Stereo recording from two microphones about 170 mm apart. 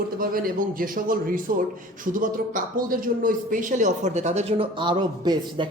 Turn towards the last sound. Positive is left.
turn(degrees=-25)  # may be behind; listen again after turning